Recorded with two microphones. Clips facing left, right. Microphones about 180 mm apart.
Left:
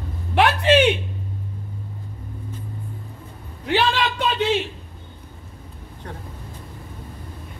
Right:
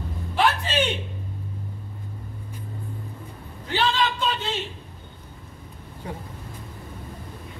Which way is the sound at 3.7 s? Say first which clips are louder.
Left 3 dB; 75° left (ahead or behind).